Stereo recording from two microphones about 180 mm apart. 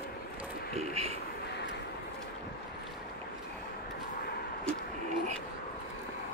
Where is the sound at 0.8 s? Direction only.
35° right (ahead or behind).